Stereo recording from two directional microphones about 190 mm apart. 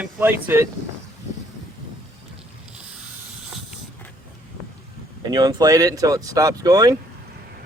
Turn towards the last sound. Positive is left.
turn(degrees=-20)  # may be behind; listen again after turning